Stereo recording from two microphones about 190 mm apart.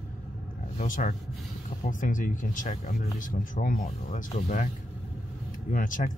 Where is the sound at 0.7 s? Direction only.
45° left (ahead or behind).